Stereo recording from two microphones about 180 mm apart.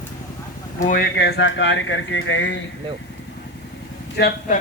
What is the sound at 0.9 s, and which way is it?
Speech, 60° left (ahead or behind).